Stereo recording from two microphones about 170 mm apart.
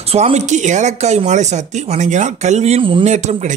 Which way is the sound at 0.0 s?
40° right (ahead or behind).